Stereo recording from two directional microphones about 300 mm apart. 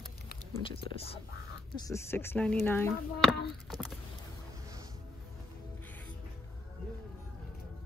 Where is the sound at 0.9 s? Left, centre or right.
Centre.